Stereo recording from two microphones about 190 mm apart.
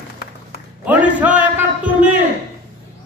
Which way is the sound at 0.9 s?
5° right (ahead or behind).